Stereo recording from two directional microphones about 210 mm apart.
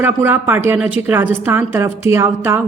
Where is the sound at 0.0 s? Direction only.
10° right (ahead or behind).